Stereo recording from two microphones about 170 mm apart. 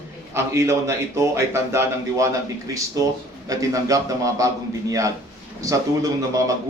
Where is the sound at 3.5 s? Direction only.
20° right (ahead or behind).